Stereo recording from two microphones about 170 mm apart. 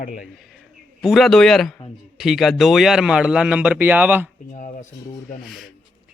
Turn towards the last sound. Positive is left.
turn(degrees=-10)  # may be behind; listen again after turning